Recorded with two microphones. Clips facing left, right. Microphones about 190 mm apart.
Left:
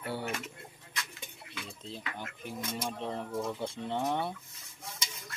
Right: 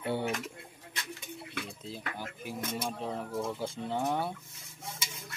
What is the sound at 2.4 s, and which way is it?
Speech, 5° right (ahead or behind).